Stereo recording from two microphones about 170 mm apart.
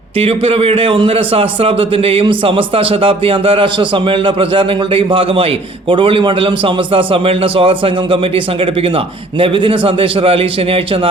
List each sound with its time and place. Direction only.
0.2 s a man's voice: 35° right (ahead or behind)
9.4 s a man's voice: 30° right (ahead or behind)